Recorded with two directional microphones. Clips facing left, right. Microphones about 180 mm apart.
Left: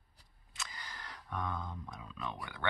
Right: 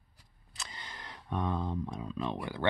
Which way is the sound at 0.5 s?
30° right (ahead or behind).